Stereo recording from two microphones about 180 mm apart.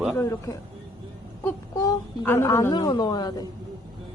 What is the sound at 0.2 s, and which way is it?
Speech, 15° left (ahead or behind).